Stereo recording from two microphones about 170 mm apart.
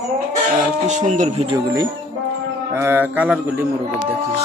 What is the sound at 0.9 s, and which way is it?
Speech, 45° right (ahead or behind).